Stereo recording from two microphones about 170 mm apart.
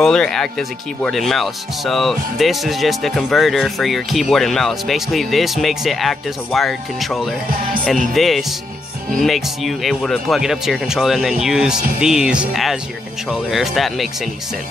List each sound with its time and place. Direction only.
0.0 s speech: 5° left (ahead or behind)